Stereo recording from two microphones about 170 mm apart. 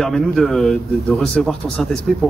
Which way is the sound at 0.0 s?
Centre (ahead or behind).